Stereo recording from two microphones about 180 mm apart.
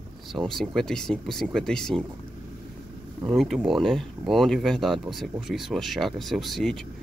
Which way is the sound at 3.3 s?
Centre (ahead or behind).